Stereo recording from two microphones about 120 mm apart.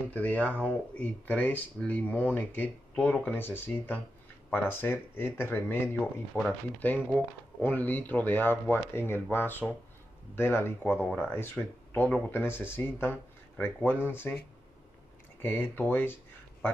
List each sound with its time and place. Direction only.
0.1 s speech: 15° left (ahead or behind)
15.4 s speech: 20° left (ahead or behind)